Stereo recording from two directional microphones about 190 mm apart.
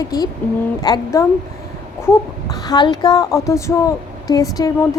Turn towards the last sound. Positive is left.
turn(degrees=20)  # may be behind; listen again after turning